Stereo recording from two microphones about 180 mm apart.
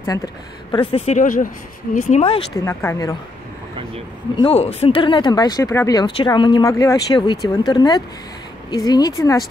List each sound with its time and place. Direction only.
0.0 s speech: 20° left (ahead or behind)
0.9 s speech: 40° left (ahead or behind)
2.6 s speech: 15° left (ahead or behind)
4.4 s speech: 35° left (ahead or behind); by 9.4 s 20° left (ahead or behind)